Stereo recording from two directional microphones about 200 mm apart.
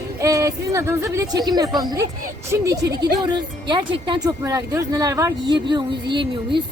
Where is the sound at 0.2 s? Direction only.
15° right (ahead or behind).